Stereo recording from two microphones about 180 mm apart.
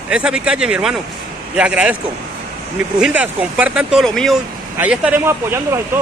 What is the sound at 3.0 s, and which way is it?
Speech, 5° right (ahead or behind).